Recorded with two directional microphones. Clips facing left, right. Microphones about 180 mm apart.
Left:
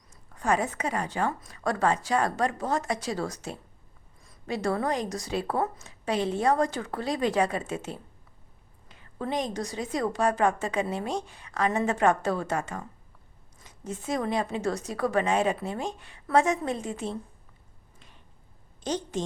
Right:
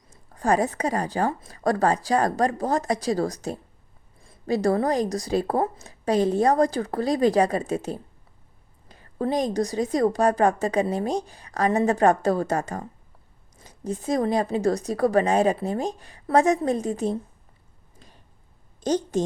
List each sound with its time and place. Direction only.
0.1 s a woman's voice: 35° right (ahead or behind)
18.8 s a woman's voice: 40° right (ahead or behind)